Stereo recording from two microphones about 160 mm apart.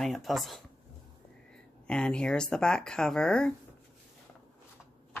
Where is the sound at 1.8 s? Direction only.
5° left (ahead or behind).